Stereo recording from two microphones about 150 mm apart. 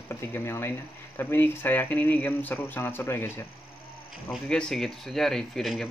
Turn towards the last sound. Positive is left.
turn(degrees=0)  # may be behind; listen again after turning